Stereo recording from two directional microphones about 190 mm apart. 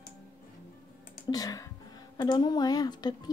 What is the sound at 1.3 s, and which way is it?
Speech, 20° left (ahead or behind).